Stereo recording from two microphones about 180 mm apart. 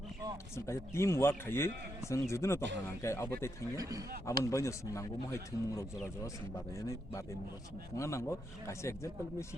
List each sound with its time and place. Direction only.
0.5 s speech: 15° left (ahead or behind)
3.8 s speech: 20° right (ahead or behind)
4.4 s speech: 15° left (ahead or behind)